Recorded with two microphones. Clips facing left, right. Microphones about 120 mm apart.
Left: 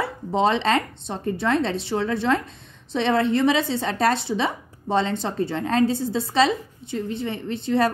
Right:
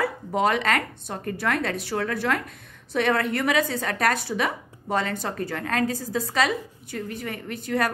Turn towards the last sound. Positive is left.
turn(degrees=25)  # may be behind; listen again after turning